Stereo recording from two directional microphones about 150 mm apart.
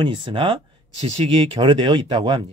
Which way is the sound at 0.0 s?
35° right (ahead or behind).